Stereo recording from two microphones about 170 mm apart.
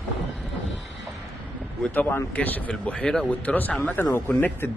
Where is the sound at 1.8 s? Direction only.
10° left (ahead or behind).